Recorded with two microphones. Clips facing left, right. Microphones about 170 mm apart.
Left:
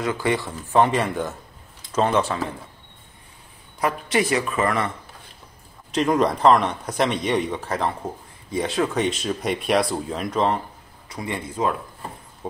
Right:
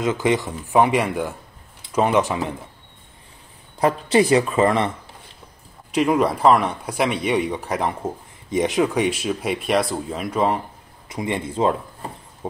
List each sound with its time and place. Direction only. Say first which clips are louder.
0.0 s speech: right 3 dB; 20° right (ahead or behind)
3.8 s speech: right 5 dB; 25° right (ahead or behind)
5.9 s speech: right 1 dB; 10° right (ahead or behind)
11.1 s speech: right 4 dB; 20° right (ahead or behind)